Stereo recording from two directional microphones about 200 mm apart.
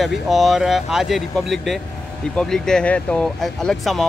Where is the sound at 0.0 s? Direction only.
Centre (ahead or behind).